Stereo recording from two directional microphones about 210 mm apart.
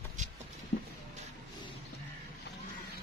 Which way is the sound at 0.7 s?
45° left (ahead or behind).